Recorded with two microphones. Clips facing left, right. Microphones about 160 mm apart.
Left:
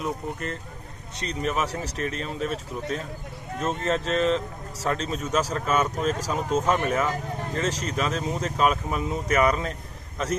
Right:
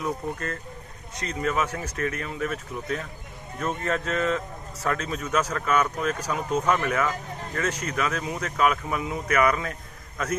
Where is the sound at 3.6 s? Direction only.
25° left (ahead or behind).